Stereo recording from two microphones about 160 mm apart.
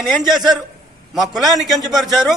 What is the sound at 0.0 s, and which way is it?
A man's voice, centre (ahead or behind).